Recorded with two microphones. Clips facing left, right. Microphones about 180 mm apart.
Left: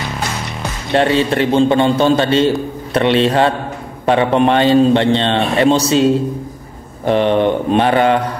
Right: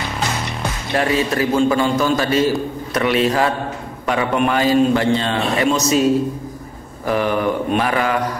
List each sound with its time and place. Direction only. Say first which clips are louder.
0.9 s a man's voice: left 5 dB; 30° left (ahead or behind)